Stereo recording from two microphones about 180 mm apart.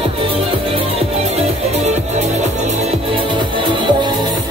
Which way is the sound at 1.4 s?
40° right (ahead or behind).